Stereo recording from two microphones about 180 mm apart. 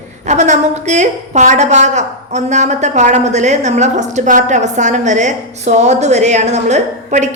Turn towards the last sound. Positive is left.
turn(degrees=-40)  # may be behind; listen again after turning